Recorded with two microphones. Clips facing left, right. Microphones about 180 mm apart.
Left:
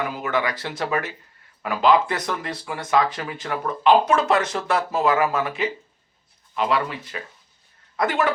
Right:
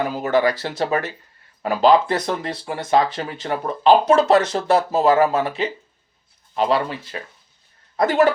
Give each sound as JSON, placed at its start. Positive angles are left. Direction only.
{"t": 0.0, "sound": "speech", "side_deg": -35}